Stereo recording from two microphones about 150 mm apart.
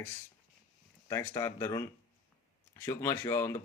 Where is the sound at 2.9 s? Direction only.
15° left (ahead or behind).